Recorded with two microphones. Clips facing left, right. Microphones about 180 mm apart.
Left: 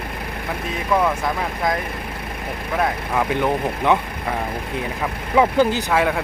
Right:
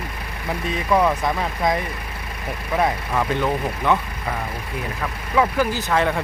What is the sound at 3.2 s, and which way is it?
Speech, 15° left (ahead or behind).